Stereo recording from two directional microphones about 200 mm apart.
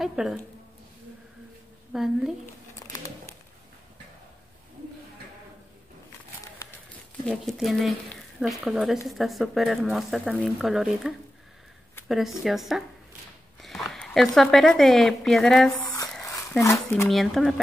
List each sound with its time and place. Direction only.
0.0 s speech: 5° right (ahead or behind)
1.9 s speech: centre (ahead or behind)
2.8 s a sound: 15° left (ahead or behind)
7.2 s speech: centre (ahead or behind)
16.3 s speech: 15° left (ahead or behind)
17.1 s speech: centre (ahead or behind)